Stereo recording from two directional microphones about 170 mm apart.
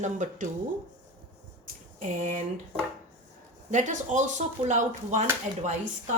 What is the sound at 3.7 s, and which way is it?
Speech, 45° right (ahead or behind).